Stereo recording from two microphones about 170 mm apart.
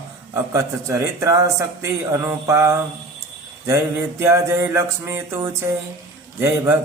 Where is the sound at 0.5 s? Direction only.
15° right (ahead or behind).